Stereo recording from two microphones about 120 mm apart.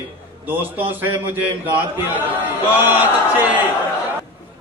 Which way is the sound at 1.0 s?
15° right (ahead or behind).